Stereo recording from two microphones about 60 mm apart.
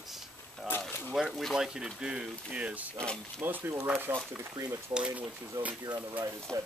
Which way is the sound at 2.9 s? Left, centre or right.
Centre.